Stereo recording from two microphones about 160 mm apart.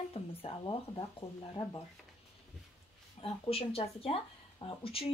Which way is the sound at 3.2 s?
35° left (ahead or behind).